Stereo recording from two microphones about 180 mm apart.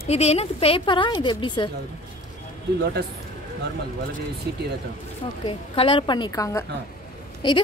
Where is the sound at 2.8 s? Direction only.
65° right (ahead or behind).